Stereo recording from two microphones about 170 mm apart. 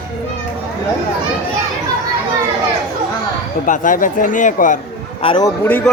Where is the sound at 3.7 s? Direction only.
50° left (ahead or behind).